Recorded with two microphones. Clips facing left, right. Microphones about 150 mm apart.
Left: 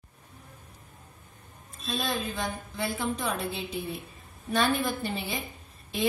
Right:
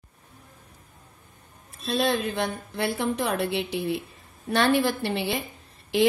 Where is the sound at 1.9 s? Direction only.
70° right (ahead or behind).